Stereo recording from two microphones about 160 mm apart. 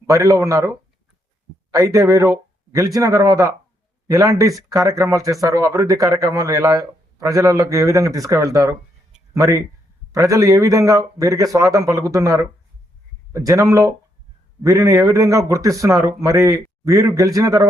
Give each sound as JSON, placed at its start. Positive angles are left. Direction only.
{"t": 0.1, "sound": "speech", "side_deg": -20}